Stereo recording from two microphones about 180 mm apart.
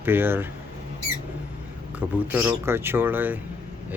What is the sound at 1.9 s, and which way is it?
Speech, 10° right (ahead or behind).